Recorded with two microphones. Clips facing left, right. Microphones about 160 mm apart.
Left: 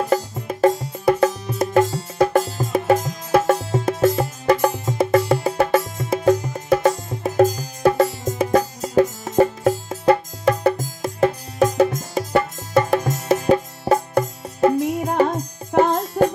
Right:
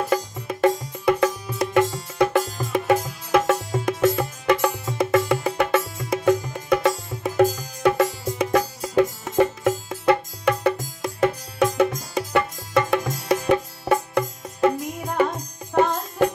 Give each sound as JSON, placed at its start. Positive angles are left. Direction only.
{"t": 0.1, "sound": "music", "side_deg": 35}
{"t": 4.8, "sound": "music", "side_deg": 30}